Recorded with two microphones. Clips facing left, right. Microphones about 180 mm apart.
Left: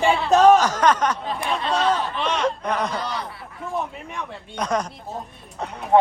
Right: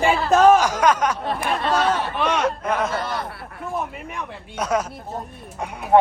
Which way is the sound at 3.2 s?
65° right (ahead or behind).